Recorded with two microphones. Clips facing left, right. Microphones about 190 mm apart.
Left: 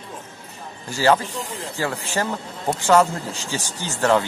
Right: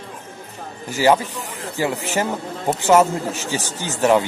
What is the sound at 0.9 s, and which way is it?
Speech, 15° right (ahead or behind).